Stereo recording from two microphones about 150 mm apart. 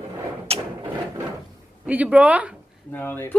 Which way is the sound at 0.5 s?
40° right (ahead or behind).